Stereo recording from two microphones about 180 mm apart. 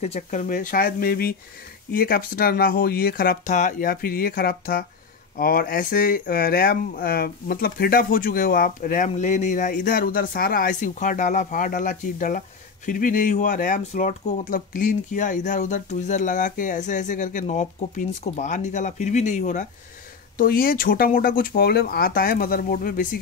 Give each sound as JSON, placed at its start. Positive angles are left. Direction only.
{"t": 0.0, "sound": "speech", "side_deg": 40}